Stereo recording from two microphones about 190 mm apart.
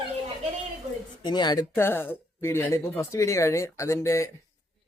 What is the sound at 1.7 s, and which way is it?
Speech, 10° left (ahead or behind).